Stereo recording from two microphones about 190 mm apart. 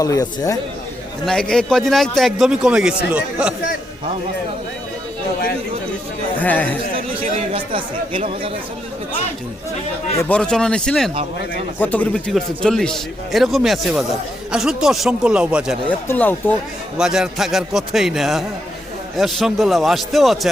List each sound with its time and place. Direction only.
0.0 s speech: 15° left (ahead or behind)
1.2 s a man's voice: 5° left (ahead or behind)
6.4 s speech: 10° left (ahead or behind)
6.9 s speech: 30° right (ahead or behind)
10.2 s a man's voice: 5° left (ahead or behind)
15.9 s speech: 10° left (ahead or behind)
17.0 s a man's voice: centre (ahead or behind)